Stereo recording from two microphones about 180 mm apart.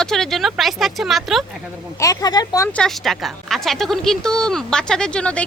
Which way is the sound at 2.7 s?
5° left (ahead or behind).